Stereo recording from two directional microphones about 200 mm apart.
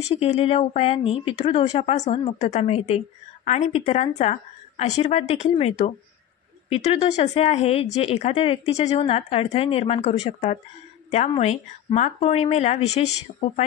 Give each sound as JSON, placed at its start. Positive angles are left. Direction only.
{"t": 0.2, "sound": "speech", "side_deg": 30}